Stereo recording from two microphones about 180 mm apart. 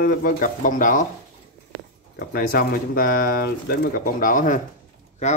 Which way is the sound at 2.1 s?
55° left (ahead or behind).